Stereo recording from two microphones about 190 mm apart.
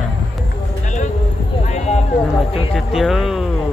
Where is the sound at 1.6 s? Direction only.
35° left (ahead or behind).